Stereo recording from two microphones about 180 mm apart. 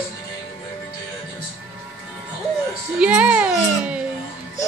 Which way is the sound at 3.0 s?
5° right (ahead or behind).